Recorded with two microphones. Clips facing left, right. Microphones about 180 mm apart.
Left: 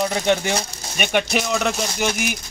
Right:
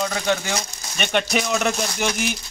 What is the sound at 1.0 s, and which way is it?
Speech, 5° left (ahead or behind).